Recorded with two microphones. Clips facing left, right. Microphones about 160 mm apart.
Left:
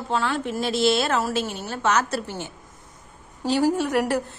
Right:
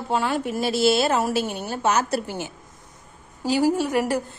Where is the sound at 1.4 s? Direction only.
50° right (ahead or behind).